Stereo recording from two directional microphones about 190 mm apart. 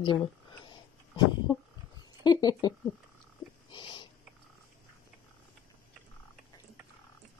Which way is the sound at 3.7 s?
25° left (ahead or behind).